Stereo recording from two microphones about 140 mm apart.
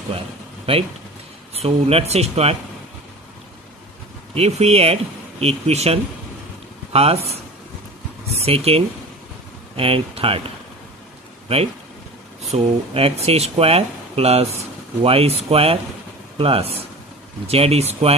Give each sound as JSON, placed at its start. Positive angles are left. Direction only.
{"t": 0.7, "sound": "speech", "side_deg": -40}
{"t": 4.3, "sound": "speech", "side_deg": -45}
{"t": 8.4, "sound": "speech", "side_deg": -45}
{"t": 12.5, "sound": "speech", "side_deg": -45}